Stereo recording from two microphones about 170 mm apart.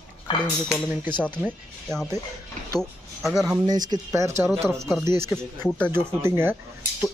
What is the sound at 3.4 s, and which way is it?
Speech, 20° right (ahead or behind).